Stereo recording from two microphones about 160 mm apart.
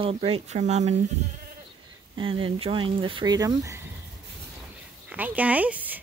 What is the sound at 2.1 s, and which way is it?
Speech, 35° right (ahead or behind).